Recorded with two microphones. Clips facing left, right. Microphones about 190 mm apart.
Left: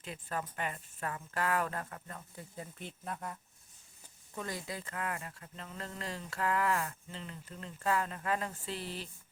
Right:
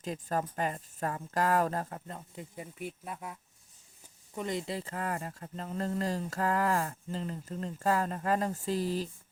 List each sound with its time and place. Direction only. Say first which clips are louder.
0.0 s speech: right 6 dB; 40° right (ahead or behind); by 3.3 s 5° right (ahead or behind)
4.4 s speech: right 6 dB; 20° right (ahead or behind); by 9.0 s 40° right (ahead or behind)